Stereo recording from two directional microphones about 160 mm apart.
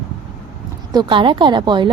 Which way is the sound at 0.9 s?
30° right (ahead or behind).